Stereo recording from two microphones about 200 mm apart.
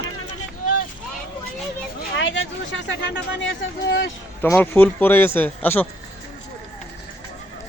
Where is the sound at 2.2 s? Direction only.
65° left (ahead or behind).